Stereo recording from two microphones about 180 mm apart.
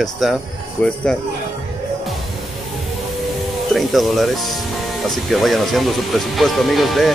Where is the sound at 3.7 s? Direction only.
Centre (ahead or behind).